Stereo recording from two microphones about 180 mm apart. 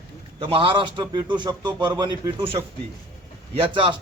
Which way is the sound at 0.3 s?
30° right (ahead or behind).